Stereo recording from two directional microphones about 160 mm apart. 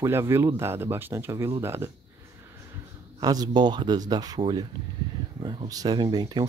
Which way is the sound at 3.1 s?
25° right (ahead or behind).